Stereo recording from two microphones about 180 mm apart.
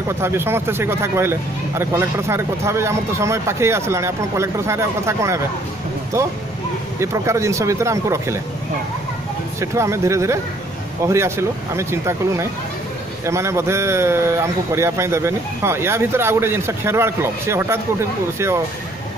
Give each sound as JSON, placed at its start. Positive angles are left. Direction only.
{"t": 0.2, "sound": "speech", "side_deg": -15}
{"t": 9.6, "sound": "speech", "side_deg": -15}